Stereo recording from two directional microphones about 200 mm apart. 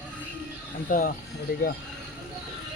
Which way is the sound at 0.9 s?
45° left (ahead or behind).